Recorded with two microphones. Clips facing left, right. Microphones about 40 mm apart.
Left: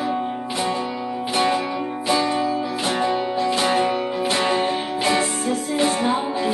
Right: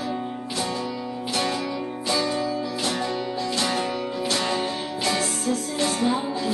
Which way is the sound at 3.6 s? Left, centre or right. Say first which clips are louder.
Left 6 dB; left.